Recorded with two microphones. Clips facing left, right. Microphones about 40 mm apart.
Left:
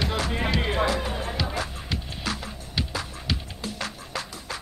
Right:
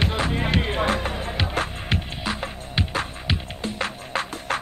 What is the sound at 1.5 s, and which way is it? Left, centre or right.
Music, right.